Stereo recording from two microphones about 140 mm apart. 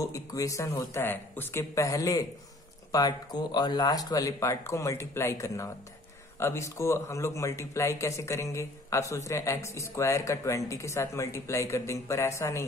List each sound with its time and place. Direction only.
0.0 s speech: 25° left (ahead or behind)